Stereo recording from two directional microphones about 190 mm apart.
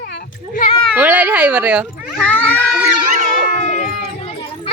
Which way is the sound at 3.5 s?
40° left (ahead or behind).